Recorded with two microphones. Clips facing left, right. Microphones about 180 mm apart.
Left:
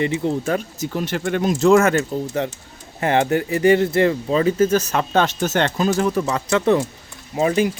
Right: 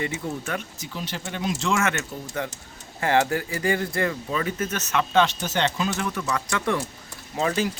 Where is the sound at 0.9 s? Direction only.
55° left (ahead or behind).